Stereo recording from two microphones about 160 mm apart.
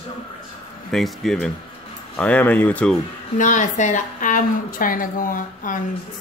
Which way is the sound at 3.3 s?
50° left (ahead or behind).